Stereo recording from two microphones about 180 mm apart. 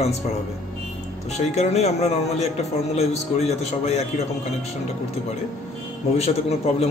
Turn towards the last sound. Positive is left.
turn(degrees=35)  # may be behind; listen again after turning